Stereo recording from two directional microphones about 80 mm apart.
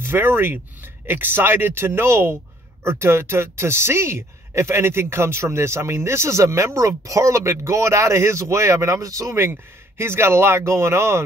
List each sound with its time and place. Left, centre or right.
0.0 s speech: right
9.4 s speech: right